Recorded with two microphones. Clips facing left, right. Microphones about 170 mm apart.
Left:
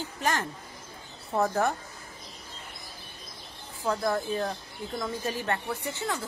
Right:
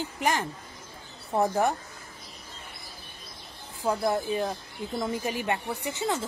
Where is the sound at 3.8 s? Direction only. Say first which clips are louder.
Right 2 dB; 15° right (ahead or behind).